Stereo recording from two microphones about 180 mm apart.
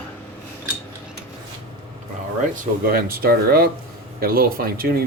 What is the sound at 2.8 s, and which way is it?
Speech, 55° right (ahead or behind).